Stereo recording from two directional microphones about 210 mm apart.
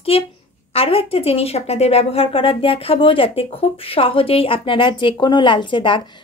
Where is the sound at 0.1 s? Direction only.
25° left (ahead or behind).